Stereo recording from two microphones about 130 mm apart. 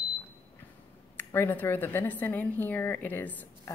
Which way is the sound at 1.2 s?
20° left (ahead or behind).